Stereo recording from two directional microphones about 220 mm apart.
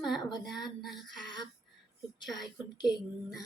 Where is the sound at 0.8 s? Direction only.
Centre (ahead or behind).